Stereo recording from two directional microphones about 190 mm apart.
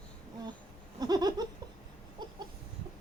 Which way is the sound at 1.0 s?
20° right (ahead or behind).